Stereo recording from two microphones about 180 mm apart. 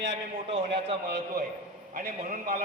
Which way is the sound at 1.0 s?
65° right (ahead or behind).